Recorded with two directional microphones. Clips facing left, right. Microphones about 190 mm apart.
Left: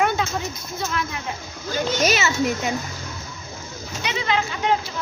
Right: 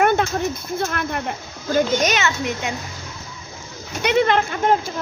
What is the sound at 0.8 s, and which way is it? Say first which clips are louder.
Speech: right 2 dB; 55° right (ahead or behind).